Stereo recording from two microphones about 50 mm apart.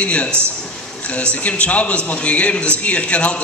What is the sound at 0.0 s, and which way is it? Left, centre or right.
A man's voice, left.